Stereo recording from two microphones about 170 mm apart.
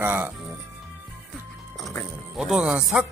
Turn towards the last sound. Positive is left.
turn(degrees=-5)  # may be behind; listen again after turning